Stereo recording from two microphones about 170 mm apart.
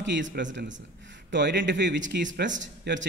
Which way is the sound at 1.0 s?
90° right.